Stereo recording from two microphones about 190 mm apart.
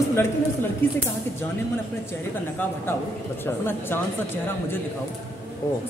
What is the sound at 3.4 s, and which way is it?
Speech, 10° left (ahead or behind).